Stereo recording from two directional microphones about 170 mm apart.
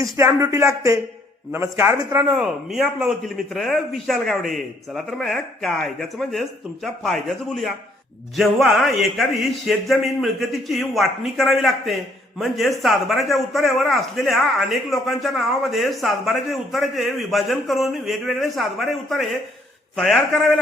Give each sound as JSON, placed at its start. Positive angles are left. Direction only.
{"t": 0.0, "sound": "speech", "side_deg": -15}
{"t": 2.3, "sound": "a man's voice", "side_deg": -5}